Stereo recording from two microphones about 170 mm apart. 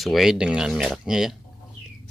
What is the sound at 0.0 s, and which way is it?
Speech, centre (ahead or behind).